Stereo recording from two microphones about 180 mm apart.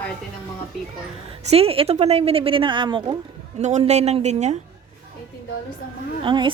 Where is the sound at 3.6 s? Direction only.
40° right (ahead or behind).